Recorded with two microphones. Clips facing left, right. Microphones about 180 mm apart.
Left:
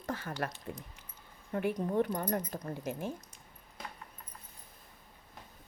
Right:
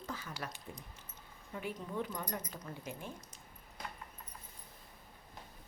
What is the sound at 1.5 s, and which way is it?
Speech, 60° left (ahead or behind).